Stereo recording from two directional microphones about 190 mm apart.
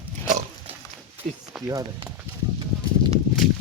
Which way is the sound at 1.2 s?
40° right (ahead or behind).